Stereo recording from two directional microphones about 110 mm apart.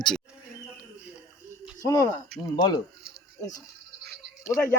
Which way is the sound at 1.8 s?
30° left (ahead or behind).